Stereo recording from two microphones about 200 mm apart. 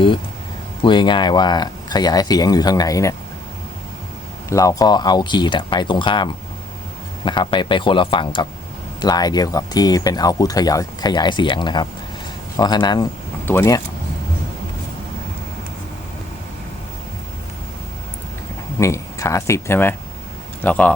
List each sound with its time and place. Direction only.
0.8 s speech: 25° left (ahead or behind)
4.4 s speech: 15° left (ahead or behind)
18.8 s speech: 15° left (ahead or behind)